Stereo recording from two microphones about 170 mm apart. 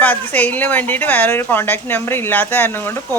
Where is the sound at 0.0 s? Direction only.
10° left (ahead or behind).